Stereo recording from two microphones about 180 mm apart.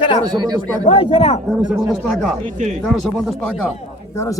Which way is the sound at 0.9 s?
35° left (ahead or behind).